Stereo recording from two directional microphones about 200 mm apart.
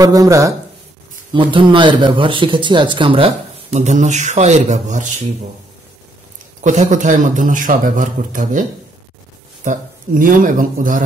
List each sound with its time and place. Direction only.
0.0 s speech: 15° right (ahead or behind)
3.7 s speech: 35° right (ahead or behind)
6.6 s speech: 35° right (ahead or behind)
9.7 s speech: 40° right (ahead or behind)